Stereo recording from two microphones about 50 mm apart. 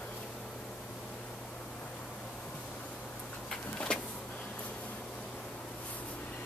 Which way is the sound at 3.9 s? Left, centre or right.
Centre.